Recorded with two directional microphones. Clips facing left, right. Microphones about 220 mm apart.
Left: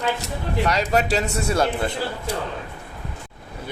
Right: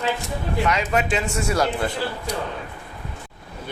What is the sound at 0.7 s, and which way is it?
Speech, 35° left (ahead or behind).